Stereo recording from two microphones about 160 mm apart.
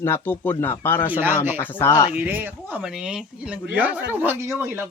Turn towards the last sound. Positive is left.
turn(degrees=-15)  # may be behind; listen again after turning